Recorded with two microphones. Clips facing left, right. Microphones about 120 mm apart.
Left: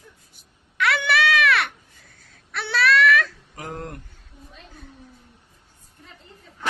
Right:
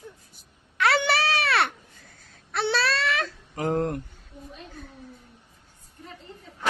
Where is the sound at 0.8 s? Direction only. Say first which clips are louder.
Left 1 dB; 30° right (ahead or behind).